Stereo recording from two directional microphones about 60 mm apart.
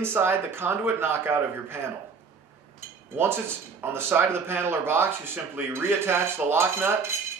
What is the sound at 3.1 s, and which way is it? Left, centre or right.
Speech, right.